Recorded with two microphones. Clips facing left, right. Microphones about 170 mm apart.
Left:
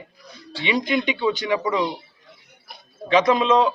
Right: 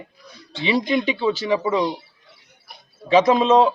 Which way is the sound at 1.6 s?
35° right (ahead or behind).